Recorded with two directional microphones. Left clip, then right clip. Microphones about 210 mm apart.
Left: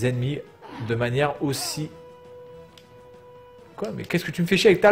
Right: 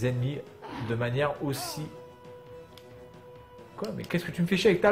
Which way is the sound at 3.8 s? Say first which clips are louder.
Left 5 dB; 30° left (ahead or behind).